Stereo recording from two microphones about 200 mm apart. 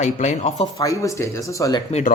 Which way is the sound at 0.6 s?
15° left (ahead or behind).